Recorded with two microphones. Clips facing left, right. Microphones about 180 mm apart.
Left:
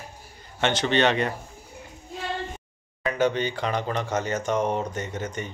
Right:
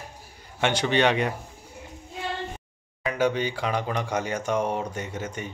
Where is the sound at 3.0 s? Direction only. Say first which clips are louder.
Left 1 dB; 10° right (ahead or behind).